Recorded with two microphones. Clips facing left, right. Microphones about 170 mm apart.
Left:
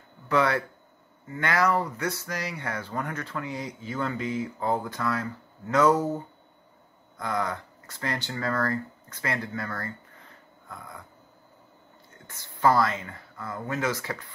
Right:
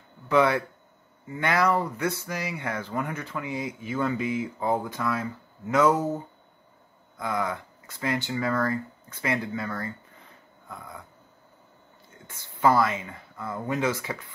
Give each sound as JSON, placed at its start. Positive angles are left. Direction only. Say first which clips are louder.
{"t": 0.3, "sound": "speech", "louder": "right 2 dB", "side_deg": -15}
{"t": 12.3, "sound": "speech", "louder": "right 1 dB", "side_deg": -10}